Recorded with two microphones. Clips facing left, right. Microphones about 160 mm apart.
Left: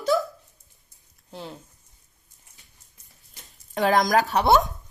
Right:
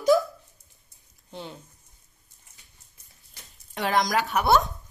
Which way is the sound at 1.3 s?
Centre (ahead or behind).